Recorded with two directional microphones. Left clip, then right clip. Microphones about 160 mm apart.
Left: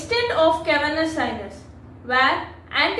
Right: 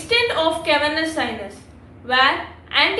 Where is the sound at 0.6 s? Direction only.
20° right (ahead or behind).